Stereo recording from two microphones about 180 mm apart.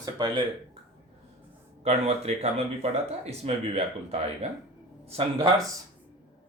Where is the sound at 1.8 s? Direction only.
35° right (ahead or behind).